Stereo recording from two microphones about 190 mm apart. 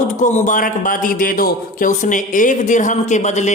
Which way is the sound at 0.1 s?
40° left (ahead or behind).